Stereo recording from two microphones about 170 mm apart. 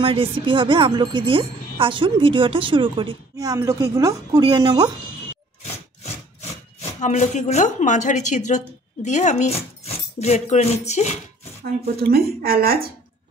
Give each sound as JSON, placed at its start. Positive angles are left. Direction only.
{"t": 0.0, "sound": "a woman's voice", "side_deg": -30}
{"t": 7.0, "sound": "a woman's voice", "side_deg": 45}
{"t": 10.1, "sound": "music", "side_deg": 40}
{"t": 12.0, "sound": "a woman's voice", "side_deg": -65}